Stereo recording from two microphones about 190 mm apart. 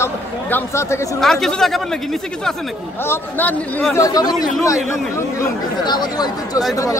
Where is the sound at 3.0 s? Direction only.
10° left (ahead or behind).